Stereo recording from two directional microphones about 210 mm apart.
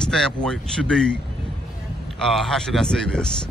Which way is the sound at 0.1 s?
5° left (ahead or behind).